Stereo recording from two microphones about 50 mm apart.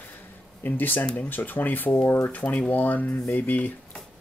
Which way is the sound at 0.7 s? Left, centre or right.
Left.